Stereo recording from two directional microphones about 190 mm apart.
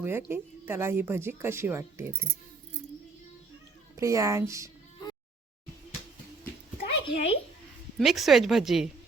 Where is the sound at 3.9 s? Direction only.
15° right (ahead or behind).